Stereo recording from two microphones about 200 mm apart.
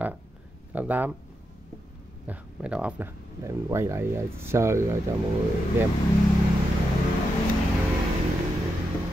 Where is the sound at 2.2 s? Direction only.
5° right (ahead or behind).